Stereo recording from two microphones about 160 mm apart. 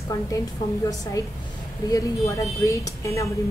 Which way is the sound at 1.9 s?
20° left (ahead or behind).